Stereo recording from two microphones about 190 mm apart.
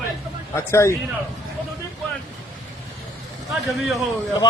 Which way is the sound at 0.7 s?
15° left (ahead or behind).